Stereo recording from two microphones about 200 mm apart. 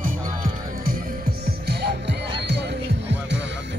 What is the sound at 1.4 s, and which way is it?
Music, 55° right (ahead or behind).